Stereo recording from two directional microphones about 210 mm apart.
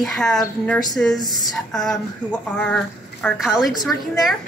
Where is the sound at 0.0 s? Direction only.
Centre (ahead or behind).